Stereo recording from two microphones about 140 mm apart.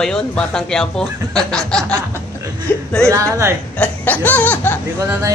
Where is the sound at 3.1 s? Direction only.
20° right (ahead or behind).